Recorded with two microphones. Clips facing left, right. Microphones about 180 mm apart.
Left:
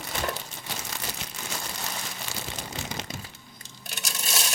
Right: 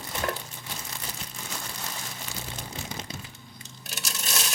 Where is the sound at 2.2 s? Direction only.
80° left.